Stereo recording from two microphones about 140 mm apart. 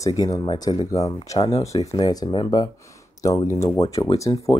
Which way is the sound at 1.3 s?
45° left (ahead or behind).